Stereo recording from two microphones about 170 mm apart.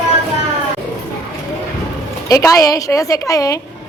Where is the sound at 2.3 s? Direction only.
20° left (ahead or behind).